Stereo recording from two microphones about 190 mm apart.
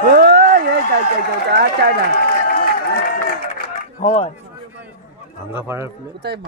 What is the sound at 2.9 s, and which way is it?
Run, 50° left (ahead or behind).